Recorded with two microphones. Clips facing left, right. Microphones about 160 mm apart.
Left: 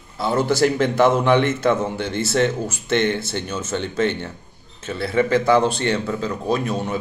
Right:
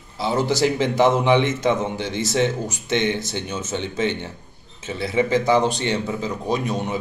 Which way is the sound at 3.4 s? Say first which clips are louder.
Left 1 dB; 15° right (ahead or behind).